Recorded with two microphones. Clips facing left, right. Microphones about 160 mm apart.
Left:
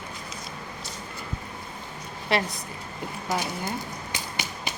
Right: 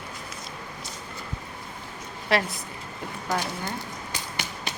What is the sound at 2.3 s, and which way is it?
A woman's voice, centre (ahead or behind).